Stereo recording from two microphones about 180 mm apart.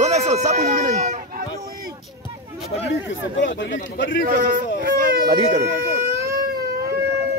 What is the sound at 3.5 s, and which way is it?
Speech, 85° left.